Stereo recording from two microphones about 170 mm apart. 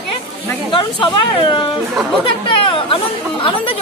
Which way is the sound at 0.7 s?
30° left (ahead or behind).